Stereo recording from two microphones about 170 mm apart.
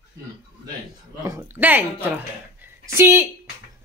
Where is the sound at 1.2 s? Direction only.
15° right (ahead or behind).